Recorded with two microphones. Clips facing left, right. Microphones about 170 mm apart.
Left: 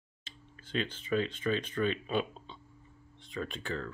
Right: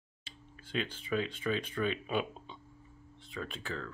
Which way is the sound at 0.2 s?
10° right (ahead or behind).